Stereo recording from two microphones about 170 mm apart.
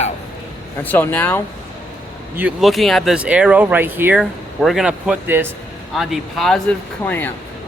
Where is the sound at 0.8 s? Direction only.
10° left (ahead or behind).